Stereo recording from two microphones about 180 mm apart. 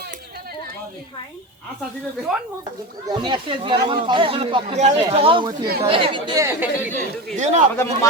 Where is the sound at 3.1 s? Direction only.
25° right (ahead or behind).